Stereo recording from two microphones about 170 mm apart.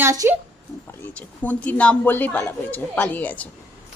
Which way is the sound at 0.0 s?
15° right (ahead or behind).